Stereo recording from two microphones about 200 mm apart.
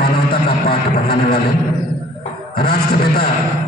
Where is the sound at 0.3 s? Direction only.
50° left (ahead or behind).